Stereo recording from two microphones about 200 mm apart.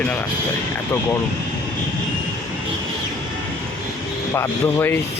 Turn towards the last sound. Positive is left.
turn(degrees=10)  # may be behind; listen again after turning